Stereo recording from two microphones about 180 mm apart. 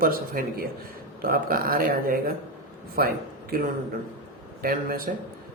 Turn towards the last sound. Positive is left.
turn(degrees=-55)  # may be behind; listen again after turning